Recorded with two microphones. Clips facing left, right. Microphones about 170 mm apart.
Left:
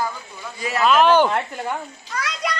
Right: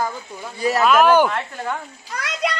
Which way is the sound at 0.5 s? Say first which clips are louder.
Right 6 dB; 35° right (ahead or behind).